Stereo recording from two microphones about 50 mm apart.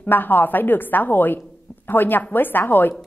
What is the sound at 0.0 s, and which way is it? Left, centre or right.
A woman's voice, left.